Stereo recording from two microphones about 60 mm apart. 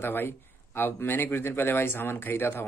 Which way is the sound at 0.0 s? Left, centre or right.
Left.